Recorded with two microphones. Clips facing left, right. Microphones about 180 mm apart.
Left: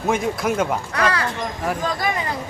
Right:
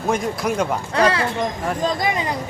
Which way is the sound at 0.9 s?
25° right (ahead or behind).